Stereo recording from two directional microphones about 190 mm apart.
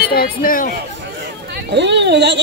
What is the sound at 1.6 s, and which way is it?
Speech, 65° right (ahead or behind).